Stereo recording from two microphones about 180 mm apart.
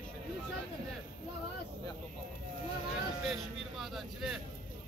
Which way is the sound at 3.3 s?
Centre (ahead or behind).